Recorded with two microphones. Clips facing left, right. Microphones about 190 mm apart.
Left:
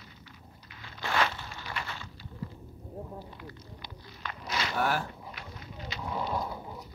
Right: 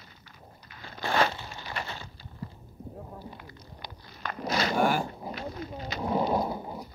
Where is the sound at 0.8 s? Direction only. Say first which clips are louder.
Right 3 dB; 40° right (ahead or behind).